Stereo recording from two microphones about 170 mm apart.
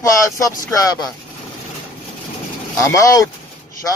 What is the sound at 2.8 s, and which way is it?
Speech, 20° left (ahead or behind).